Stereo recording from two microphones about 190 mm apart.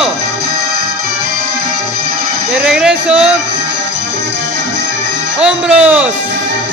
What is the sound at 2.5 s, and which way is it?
Speech, 5° right (ahead or behind).